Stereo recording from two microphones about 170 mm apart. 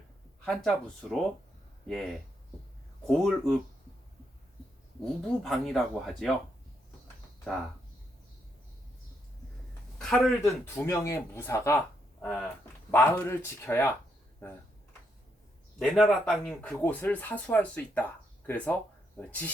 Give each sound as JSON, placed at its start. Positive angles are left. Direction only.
{"t": 0.4, "sound": "speech", "side_deg": 0}
{"t": 3.1, "sound": "speech", "side_deg": 0}
{"t": 5.0, "sound": "speech", "side_deg": 5}
{"t": 10.0, "sound": "speech", "side_deg": 0}
{"t": 10.4, "sound": "speech", "side_deg": 15}
{"t": 15.8, "sound": "speech", "side_deg": 0}